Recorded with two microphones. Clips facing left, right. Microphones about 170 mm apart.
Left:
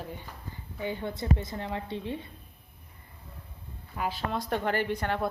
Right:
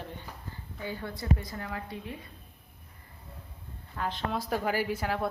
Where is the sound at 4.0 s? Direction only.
5° left (ahead or behind).